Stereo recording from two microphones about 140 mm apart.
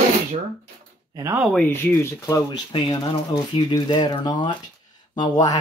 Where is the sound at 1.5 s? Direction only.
15° left (ahead or behind).